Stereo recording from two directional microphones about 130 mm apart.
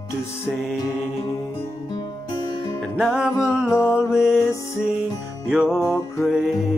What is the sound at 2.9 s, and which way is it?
Music, 5° right (ahead or behind).